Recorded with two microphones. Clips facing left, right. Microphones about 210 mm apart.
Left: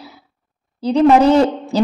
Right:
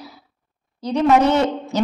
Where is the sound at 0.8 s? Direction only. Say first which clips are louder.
Left 5 dB; 30° left (ahead or behind).